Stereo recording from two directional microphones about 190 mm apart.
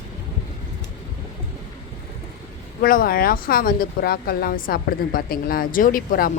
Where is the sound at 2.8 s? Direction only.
50° left (ahead or behind).